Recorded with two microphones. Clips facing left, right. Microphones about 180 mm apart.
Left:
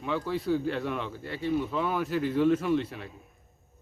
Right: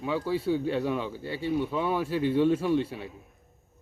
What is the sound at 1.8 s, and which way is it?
Speech, 30° right (ahead or behind).